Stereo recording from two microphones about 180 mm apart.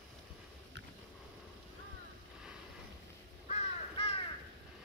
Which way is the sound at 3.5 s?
35° left (ahead or behind).